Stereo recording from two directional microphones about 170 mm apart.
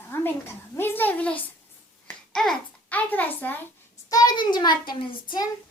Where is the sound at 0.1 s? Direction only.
15° left (ahead or behind).